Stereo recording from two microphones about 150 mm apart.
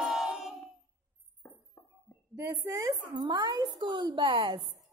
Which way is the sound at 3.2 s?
25° right (ahead or behind).